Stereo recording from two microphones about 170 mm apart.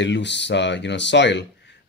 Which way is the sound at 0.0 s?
90° left.